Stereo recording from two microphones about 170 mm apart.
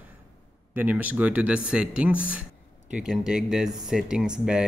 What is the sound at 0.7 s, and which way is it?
Speech, 10° right (ahead or behind).